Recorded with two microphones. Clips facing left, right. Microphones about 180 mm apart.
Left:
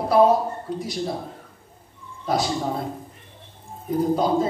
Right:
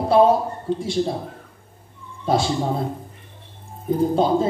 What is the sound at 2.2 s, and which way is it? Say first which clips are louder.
Speech: right 3 dB; 25° right (ahead or behind).